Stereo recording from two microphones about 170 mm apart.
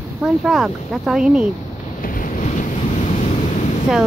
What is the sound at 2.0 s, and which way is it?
Boat, 55° left (ahead or behind).